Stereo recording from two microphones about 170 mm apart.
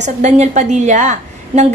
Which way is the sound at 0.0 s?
45° right (ahead or behind).